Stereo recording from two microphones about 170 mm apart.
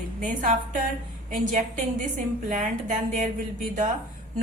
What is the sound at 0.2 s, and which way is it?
A woman's voice, 50° right (ahead or behind).